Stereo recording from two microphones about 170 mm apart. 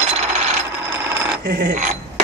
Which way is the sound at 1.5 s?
65° right (ahead or behind).